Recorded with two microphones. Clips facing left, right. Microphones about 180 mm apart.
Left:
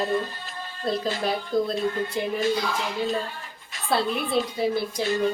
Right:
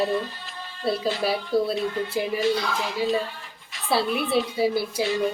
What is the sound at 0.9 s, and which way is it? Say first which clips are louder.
Speech: right 2 dB; 5° right (ahead or behind).